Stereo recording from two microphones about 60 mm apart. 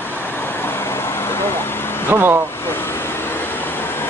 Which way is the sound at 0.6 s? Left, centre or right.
Left.